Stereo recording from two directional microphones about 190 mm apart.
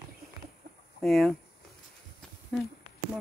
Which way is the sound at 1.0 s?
Centre (ahead or behind).